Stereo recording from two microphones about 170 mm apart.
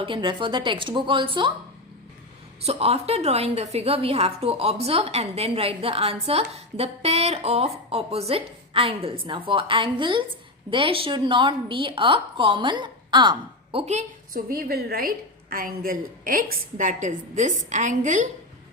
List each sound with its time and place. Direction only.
0.0 s a woman's voice: 30° right (ahead or behind)
2.6 s a woman's voice: 35° right (ahead or behind)
14.3 s a woman's voice: 60° right (ahead or behind)